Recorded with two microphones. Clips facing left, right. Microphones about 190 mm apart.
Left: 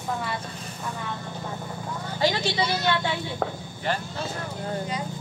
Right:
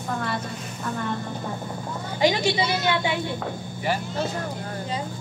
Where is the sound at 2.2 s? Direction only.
15° right (ahead or behind).